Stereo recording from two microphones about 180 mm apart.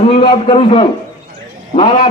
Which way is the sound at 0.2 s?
35° left (ahead or behind).